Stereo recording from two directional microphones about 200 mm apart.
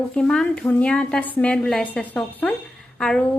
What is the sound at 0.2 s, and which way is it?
A woman's voice, 5° left (ahead or behind).